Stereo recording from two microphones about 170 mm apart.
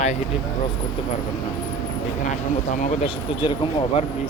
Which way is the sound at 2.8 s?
40° left (ahead or behind).